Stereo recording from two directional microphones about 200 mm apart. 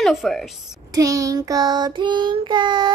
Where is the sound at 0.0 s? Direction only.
Centre (ahead or behind).